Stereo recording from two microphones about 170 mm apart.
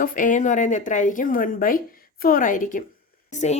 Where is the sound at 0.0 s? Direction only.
50° left (ahead or behind).